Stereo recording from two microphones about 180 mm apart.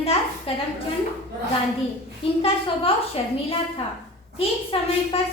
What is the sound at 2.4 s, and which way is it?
A woman's voice, 30° left (ahead or behind).